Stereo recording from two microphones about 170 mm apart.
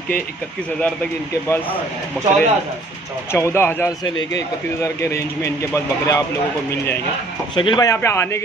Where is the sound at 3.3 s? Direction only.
15° left (ahead or behind).